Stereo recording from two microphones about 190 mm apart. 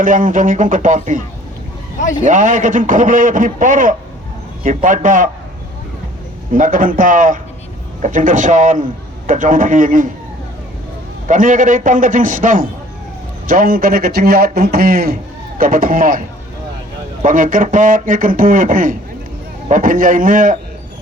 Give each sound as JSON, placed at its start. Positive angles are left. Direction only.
{"t": 0.0, "sound": "a man's voice", "side_deg": -45}
{"t": 2.2, "sound": "a man's voice", "side_deg": -40}
{"t": 6.5, "sound": "a man's voice", "side_deg": -45}
{"t": 11.3, "sound": "a man's voice", "side_deg": -45}
{"t": 17.2, "sound": "a man's voice", "side_deg": -45}